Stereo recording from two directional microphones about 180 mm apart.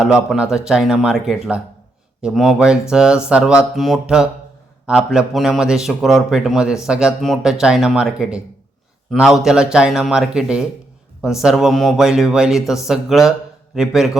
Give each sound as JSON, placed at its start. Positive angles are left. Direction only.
{"t": 0.0, "sound": "a man's voice", "side_deg": -5}